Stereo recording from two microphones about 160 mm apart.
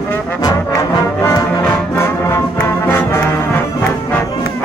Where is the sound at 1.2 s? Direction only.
20° left (ahead or behind).